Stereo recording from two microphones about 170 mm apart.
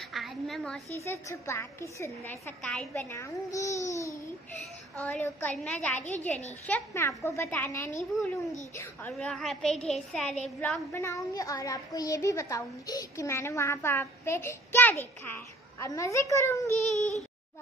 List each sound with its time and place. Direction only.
0.1 s a woman's voice: centre (ahead or behind)
1.0 s a woman's voice: 15° left (ahead or behind)
16.7 s speech: 45° left (ahead or behind)